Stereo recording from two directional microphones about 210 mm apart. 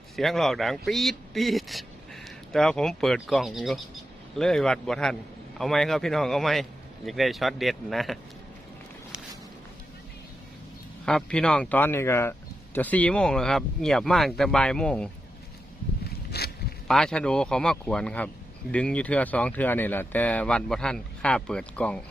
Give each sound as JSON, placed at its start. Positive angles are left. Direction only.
{"t": 0.2, "sound": "speech", "side_deg": 0}
{"t": 11.0, "sound": "speech", "side_deg": 5}
{"t": 16.0, "sound": "a sound", "side_deg": 50}
{"t": 16.9, "sound": "speech", "side_deg": 5}